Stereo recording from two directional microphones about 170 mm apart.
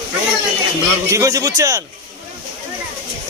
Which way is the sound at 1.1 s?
20° right (ahead or behind).